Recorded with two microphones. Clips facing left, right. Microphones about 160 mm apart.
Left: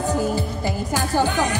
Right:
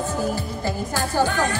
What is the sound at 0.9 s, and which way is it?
Speech, 20° left (ahead or behind).